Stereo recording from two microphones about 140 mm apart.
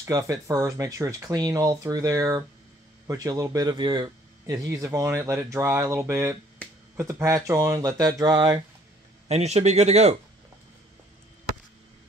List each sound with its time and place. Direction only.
0.0 s speech: 20° right (ahead or behind)
4.6 s speech: 20° right (ahead or behind)
9.3 s speech: 50° right (ahead or behind)